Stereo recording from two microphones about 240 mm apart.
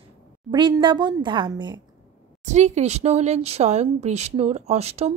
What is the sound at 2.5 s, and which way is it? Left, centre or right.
Speech, right.